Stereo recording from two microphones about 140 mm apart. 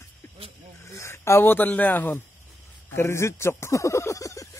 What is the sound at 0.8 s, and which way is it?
Speech, 20° left (ahead or behind).